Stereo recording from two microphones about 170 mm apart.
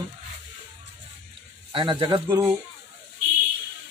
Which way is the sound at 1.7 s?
30° right (ahead or behind).